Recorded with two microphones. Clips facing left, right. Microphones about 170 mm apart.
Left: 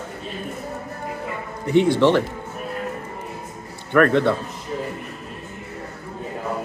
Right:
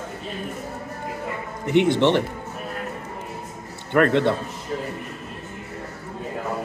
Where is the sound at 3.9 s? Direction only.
20° right (ahead or behind).